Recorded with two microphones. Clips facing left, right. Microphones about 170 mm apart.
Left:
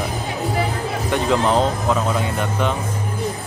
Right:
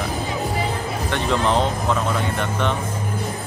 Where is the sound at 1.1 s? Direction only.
5° left (ahead or behind).